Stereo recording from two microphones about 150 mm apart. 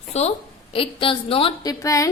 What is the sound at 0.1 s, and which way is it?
A woman's voice, 45° left (ahead or behind).